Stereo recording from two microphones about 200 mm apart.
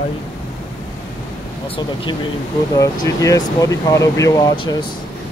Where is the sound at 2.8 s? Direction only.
15° left (ahead or behind).